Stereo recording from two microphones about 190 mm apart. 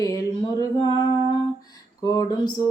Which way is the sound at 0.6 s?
20° left (ahead or behind).